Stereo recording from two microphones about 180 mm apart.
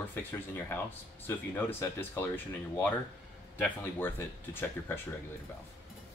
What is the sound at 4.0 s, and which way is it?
Speech, 10° left (ahead or behind).